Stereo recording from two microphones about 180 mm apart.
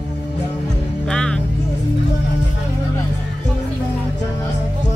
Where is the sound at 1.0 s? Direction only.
5° left (ahead or behind).